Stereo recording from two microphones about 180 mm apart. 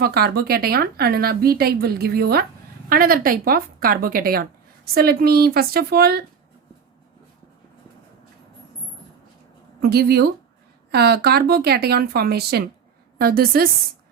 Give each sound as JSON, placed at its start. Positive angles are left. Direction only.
{"t": 0.0, "sound": "a woman's voice", "side_deg": -60}
{"t": 9.8, "sound": "a woman's voice", "side_deg": -60}